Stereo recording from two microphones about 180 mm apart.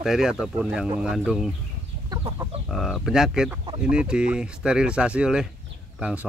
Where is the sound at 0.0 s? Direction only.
5° right (ahead or behind).